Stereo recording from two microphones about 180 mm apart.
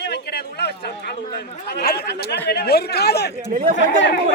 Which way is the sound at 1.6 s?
60° left (ahead or behind).